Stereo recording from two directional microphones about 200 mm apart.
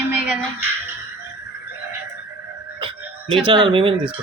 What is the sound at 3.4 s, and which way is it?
Speech, 25° right (ahead or behind).